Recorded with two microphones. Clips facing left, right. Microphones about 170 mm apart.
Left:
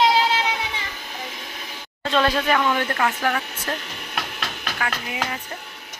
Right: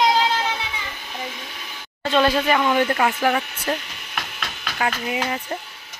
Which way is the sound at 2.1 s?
Centre (ahead or behind).